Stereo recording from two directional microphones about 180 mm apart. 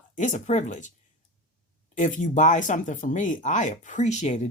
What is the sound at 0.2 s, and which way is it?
Speech, 45° left (ahead or behind).